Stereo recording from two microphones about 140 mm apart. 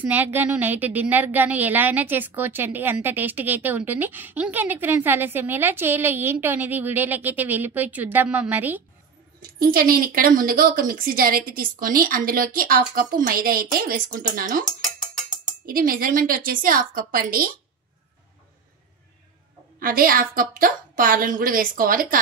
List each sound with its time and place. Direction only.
0.0 s a woman's voice: 15° right (ahead or behind)
9.4 s speech: 90° right
15.6 s speech: 90° right
19.8 s speech: 90° right